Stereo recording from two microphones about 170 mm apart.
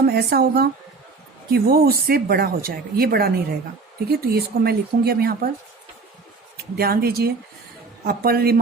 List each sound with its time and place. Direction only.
0.1 s speech: 65° right (ahead or behind)
6.7 s speech: 65° right (ahead or behind)